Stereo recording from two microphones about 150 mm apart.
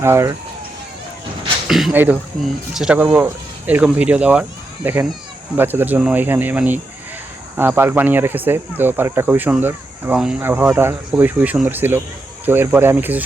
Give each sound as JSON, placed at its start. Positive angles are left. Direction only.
{"t": 0.0, "sound": "speech", "side_deg": -20}
{"t": 1.6, "sound": "speech", "side_deg": 0}
{"t": 1.9, "sound": "speech", "side_deg": -10}